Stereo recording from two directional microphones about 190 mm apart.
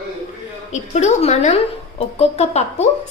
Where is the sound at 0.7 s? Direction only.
35° left (ahead or behind).